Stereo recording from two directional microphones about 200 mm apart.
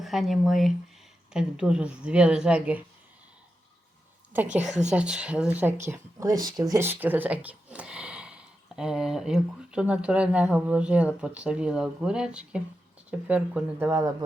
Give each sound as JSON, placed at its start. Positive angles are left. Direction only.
{"t": 0.0, "sound": "speech", "side_deg": 0}
{"t": 4.9, "sound": "speech", "side_deg": -5}